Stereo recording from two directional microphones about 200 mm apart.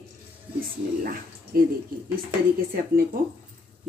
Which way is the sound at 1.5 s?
50° right (ahead or behind).